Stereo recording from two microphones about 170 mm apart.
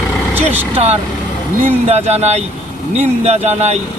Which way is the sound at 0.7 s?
35° right (ahead or behind).